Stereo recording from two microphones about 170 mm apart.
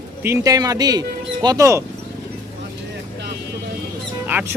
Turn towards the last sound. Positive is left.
turn(degrees=-10)  # may be behind; listen again after turning